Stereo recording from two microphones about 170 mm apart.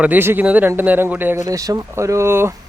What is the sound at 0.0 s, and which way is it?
A man's voice, 10° right (ahead or behind).